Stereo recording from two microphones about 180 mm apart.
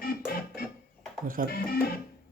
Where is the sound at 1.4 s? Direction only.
50° right (ahead or behind).